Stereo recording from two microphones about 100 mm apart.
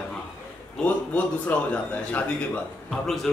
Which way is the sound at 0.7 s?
15° left (ahead or behind).